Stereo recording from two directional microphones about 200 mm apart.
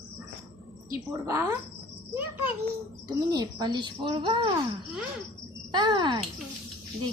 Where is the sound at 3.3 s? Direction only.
20° right (ahead or behind).